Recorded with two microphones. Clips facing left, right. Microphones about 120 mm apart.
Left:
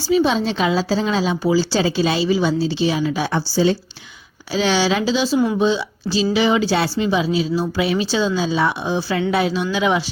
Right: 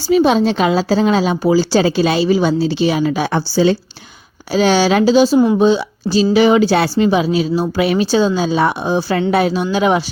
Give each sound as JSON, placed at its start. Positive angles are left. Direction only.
{"t": 0.1, "sound": "a woman's voice", "side_deg": -55}
{"t": 4.5, "sound": "speech", "side_deg": -50}